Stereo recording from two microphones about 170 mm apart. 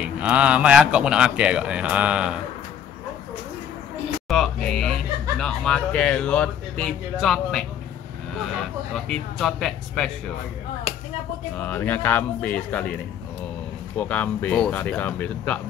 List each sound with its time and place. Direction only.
0.2 s speech: 5° right (ahead or behind)
4.3 s speech: 5° left (ahead or behind)
8.9 s speech: 5° left (ahead or behind)
11.5 s speech: 10° left (ahead or behind)